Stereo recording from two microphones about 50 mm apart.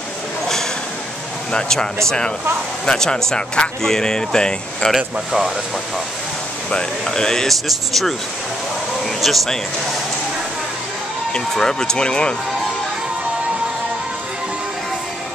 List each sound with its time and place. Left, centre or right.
1.5 s speech: centre
4.9 s speech: centre
6.7 s speech: centre
7.6 s speech: centre
11.5 s speech: centre